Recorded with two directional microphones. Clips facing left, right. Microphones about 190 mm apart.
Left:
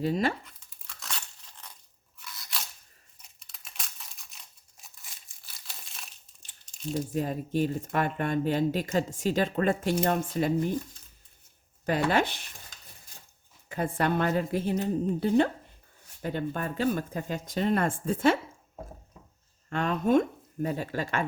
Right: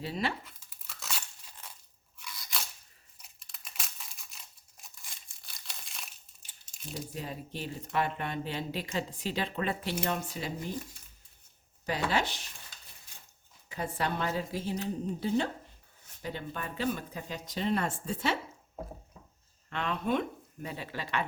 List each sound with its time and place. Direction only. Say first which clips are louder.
0.0 s speech: left 7 dB; 45° left (ahead or behind)
0.4 s a sound: even; 5° right (ahead or behind)
2.1 s crunch: even; centre (ahead or behind)
3.2 s crumpling: right 1 dB; centre (ahead or behind)
6.9 s speech: left 9 dB; 45° left (ahead or behind)
11.9 s a woman's voice: left 5 dB; 55° left (ahead or behind)
13.7 s a woman's voice: left 6 dB; 50° left (ahead or behind)
19.7 s speech: left 7 dB; 45° left (ahead or behind)